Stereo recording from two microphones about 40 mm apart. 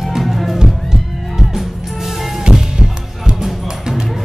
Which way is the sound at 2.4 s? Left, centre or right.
Right.